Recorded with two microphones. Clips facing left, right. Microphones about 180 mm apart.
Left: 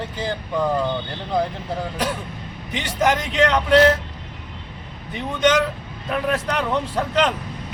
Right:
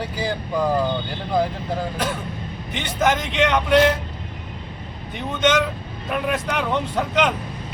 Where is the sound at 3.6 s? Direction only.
5° right (ahead or behind).